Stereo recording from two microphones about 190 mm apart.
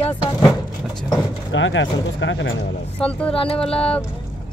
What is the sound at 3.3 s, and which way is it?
Music, 30° left (ahead or behind).